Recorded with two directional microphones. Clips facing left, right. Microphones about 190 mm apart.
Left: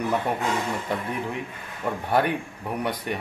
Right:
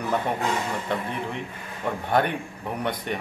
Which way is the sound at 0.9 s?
10° left (ahead or behind).